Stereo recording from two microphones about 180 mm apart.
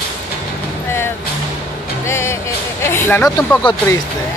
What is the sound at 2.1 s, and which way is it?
Speech, 15° left (ahead or behind).